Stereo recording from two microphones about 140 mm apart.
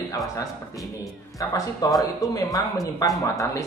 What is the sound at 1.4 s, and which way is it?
Speech, 25° left (ahead or behind).